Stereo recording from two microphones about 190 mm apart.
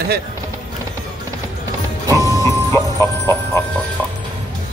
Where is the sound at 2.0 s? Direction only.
15° right (ahead or behind).